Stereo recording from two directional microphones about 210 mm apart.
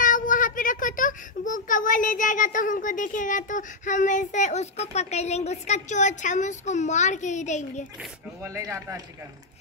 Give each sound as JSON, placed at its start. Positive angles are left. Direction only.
{"t": 0.0, "sound": "a child's voice", "side_deg": 40}
{"t": 8.4, "sound": "speech", "side_deg": -15}